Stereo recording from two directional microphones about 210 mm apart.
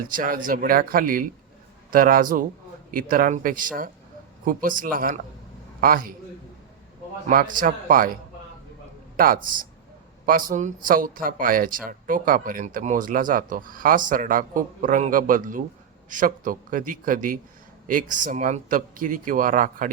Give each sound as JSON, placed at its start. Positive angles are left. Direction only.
{"t": 0.1, "sound": "a man's voice", "side_deg": -40}
{"t": 7.3, "sound": "a man's voice", "side_deg": -40}